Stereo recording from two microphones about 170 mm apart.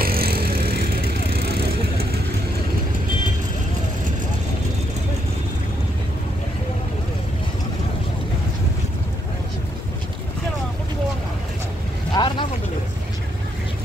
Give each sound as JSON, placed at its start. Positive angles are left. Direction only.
{"t": 0.0, "sound": "vehicle", "side_deg": -60}
{"t": 12.1, "sound": "vehicle", "side_deg": 25}